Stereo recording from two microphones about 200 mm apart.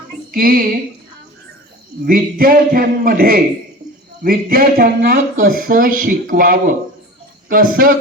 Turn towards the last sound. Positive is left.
turn(degrees=-45)  # may be behind; listen again after turning